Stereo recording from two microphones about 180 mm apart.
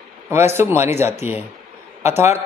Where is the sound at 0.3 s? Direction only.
15° right (ahead or behind).